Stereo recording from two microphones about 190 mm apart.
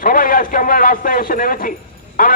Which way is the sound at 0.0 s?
45° left (ahead or behind).